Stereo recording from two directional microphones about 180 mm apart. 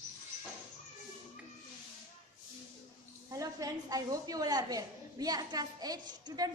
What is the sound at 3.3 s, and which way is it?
A woman's voice, 20° right (ahead or behind).